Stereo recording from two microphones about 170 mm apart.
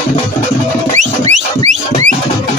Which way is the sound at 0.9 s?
45° right (ahead or behind).